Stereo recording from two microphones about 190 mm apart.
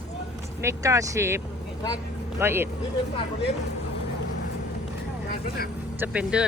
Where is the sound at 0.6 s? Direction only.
15° right (ahead or behind).